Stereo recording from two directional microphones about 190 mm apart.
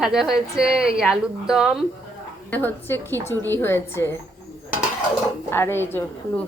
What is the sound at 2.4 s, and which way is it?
A woman's voice, 10° left (ahead or behind).